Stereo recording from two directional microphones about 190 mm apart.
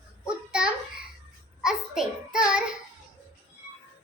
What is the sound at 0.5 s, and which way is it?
A child's voice, 5° right (ahead or behind).